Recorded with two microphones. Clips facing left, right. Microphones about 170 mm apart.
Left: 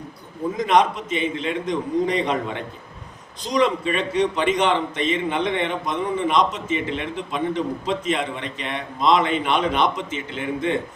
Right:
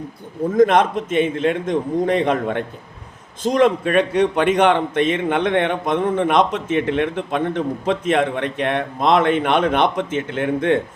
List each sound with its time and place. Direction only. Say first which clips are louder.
0.5 s a man's voice: right 5 dB; 55° right (ahead or behind)